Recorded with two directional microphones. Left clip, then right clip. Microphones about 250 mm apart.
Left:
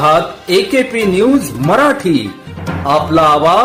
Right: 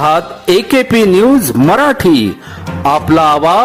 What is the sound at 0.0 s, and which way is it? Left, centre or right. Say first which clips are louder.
A man's voice: even; right.